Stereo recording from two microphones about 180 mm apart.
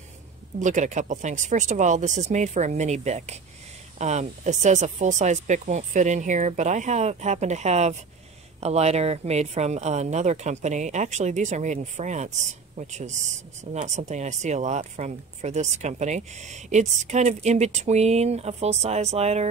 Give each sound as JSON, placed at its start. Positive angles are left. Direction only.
{"t": 0.6, "sound": "speech", "side_deg": -45}